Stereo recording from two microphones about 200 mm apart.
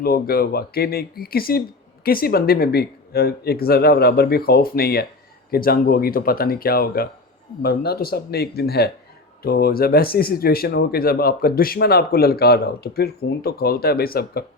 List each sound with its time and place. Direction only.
0.0 s speech: 50° left (ahead or behind)